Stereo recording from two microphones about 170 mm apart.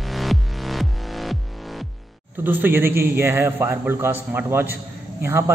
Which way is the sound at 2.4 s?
10° right (ahead or behind).